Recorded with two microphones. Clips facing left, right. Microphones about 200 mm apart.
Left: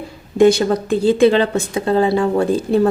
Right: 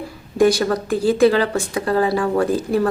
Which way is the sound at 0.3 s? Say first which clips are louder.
Left 3 dB; 25° left (ahead or behind).